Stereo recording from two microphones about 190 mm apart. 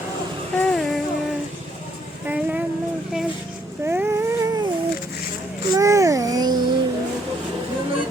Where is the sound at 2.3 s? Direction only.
10° right (ahead or behind).